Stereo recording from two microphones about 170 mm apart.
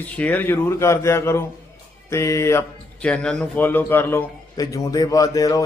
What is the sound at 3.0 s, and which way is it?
A man's voice, 5° left (ahead or behind).